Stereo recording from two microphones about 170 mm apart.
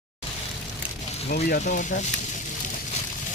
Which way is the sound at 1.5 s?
55° left (ahead or behind).